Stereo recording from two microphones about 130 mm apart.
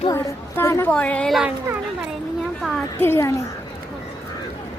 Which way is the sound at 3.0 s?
20° left (ahead or behind).